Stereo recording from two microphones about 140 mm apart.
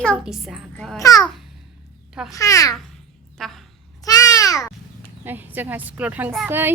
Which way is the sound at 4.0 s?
25° left (ahead or behind).